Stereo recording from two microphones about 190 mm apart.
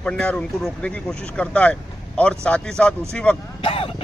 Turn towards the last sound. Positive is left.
turn(degrees=25)  # may be behind; listen again after turning